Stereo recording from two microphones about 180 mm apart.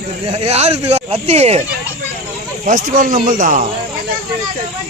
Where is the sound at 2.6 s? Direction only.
45° right (ahead or behind).